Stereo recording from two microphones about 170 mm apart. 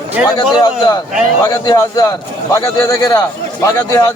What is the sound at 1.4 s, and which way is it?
A man's voice, 20° left (ahead or behind).